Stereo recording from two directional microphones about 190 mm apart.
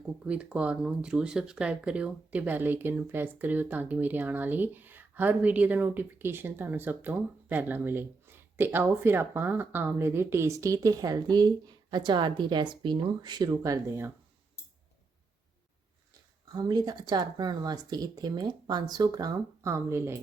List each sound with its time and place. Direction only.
0.3 s speech: 5° right (ahead or behind)
16.5 s speech: 20° right (ahead or behind)